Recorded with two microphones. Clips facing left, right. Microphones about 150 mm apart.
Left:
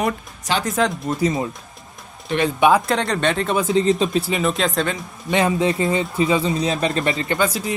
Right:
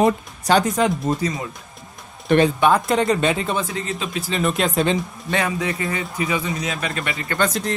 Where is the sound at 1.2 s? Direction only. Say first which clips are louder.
Left 5 dB; 25° left (ahead or behind).